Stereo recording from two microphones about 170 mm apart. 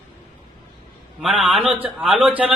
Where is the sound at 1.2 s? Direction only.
5° right (ahead or behind).